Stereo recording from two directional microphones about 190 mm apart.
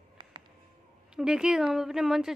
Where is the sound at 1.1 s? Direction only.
5° right (ahead or behind).